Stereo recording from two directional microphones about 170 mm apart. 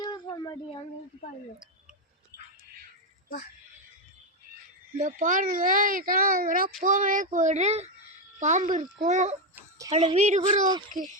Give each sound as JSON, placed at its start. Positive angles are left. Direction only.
{"t": 0.0, "sound": "a sound", "side_deg": 25}
{"t": 4.9, "sound": "speech", "side_deg": -50}
{"t": 9.6, "sound": "chicken", "side_deg": -20}
{"t": 10.2, "sound": "speech", "side_deg": -45}